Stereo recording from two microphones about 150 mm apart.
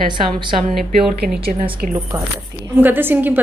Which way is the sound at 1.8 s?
65° right (ahead or behind).